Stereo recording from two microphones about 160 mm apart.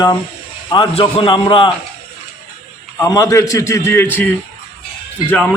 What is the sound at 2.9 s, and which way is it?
A man's voice, 20° left (ahead or behind).